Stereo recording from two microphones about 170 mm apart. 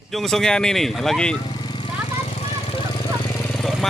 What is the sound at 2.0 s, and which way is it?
Vehicle, 40° left (ahead or behind).